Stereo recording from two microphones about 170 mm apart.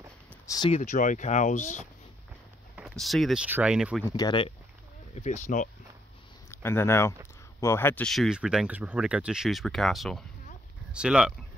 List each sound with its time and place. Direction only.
0.7 s speech: 45° left (ahead or behind)
2.7 s speech: centre (ahead or behind)
4.1 s speech: 30° left (ahead or behind)
5.1 s speech: 45° left (ahead or behind)
6.5 s speech: 15° left (ahead or behind); by 11.3 s 5° right (ahead or behind)